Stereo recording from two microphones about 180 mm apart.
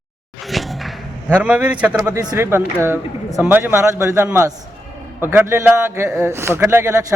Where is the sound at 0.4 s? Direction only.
Centre (ahead or behind).